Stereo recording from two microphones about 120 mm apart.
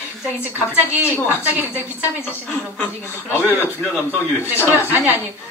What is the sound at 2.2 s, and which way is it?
A man's voice, 15° left (ahead or behind).